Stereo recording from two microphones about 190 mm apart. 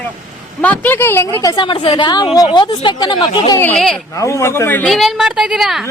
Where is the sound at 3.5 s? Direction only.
5° left (ahead or behind).